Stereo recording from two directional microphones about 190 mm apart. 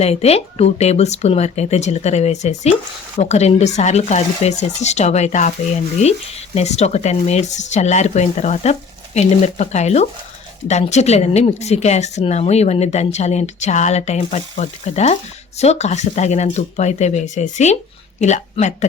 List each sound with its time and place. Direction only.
0.0 s speech: 35° left (ahead or behind)